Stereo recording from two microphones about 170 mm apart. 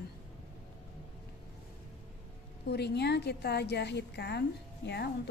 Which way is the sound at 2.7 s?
80° left.